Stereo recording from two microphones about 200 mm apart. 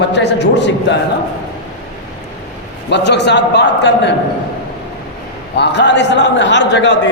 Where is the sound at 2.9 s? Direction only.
60° left (ahead or behind).